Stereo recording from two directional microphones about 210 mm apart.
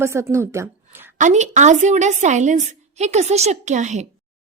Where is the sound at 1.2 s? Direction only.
35° right (ahead or behind).